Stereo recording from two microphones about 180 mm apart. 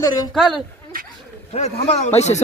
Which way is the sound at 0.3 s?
Centre (ahead or behind).